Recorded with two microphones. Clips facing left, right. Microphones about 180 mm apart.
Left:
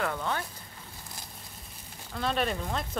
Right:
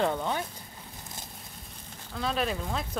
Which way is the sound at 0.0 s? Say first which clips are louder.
Right 3 dB; 20° right (ahead or behind).